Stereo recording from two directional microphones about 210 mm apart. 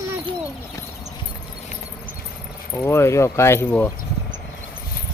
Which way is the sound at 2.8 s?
10° left (ahead or behind).